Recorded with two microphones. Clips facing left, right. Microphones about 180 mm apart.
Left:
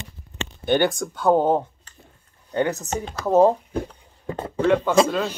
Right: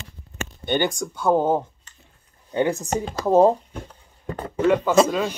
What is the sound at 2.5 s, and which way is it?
Speech, 25° right (ahead or behind).